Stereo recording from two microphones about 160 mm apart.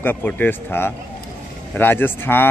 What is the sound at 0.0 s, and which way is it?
Speech, 10° left (ahead or behind).